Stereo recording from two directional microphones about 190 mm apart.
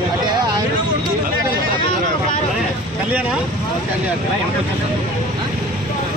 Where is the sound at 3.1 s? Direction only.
10° right (ahead or behind).